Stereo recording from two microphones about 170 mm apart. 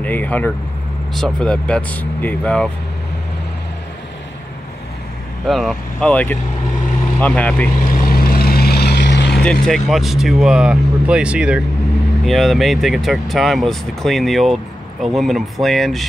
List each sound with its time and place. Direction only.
0.0 s speech: 10° left (ahead or behind)
5.5 s speech: centre (ahead or behind)
7.8 s vehicle: 60° left (ahead or behind); by 9.4 s 90° left
9.4 s speech: 5° left (ahead or behind)